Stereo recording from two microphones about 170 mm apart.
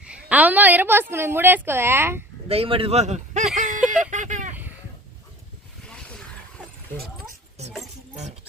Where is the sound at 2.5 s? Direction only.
35° right (ahead or behind).